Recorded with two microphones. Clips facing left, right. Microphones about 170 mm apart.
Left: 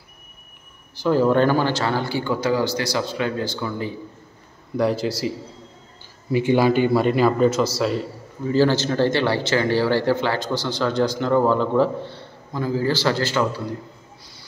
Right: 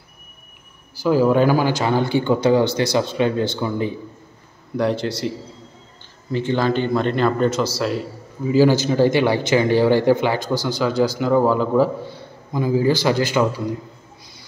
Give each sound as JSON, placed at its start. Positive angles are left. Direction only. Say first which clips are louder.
{"t": 0.9, "sound": "speech", "louder": "right 2 dB", "side_deg": -5}
{"t": 4.7, "sound": "a man's voice", "louder": "even", "side_deg": 0}
{"t": 6.3, "sound": "a man's voice", "louder": "left 2 dB", "side_deg": 10}